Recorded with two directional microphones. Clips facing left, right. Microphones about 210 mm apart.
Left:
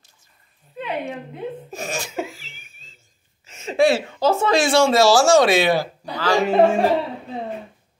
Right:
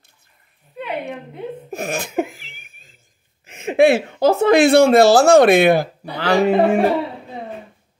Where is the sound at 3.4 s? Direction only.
55° right (ahead or behind).